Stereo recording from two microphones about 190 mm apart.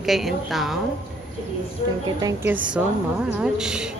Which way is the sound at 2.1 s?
20° right (ahead or behind).